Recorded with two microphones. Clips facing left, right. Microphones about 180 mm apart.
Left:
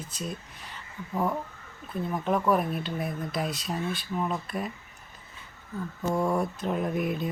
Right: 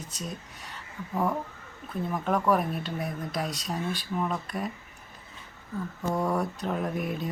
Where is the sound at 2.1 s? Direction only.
Centre (ahead or behind).